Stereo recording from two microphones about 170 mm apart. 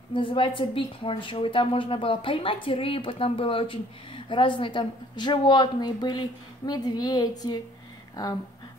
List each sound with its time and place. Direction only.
0.1 s a woman's voice: 30° left (ahead or behind)